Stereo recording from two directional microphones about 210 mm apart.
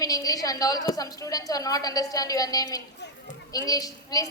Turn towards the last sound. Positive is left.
turn(degrees=15)  # may be behind; listen again after turning